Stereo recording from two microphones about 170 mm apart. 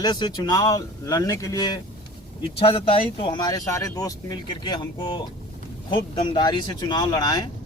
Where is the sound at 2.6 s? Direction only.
35° left (ahead or behind).